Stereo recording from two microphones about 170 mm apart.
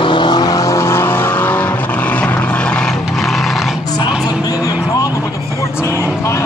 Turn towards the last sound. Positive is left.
turn(degrees=15)  # may be behind; listen again after turning